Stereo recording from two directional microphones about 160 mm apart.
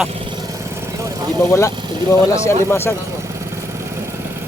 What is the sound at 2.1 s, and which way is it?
Speech, 15° left (ahead or behind).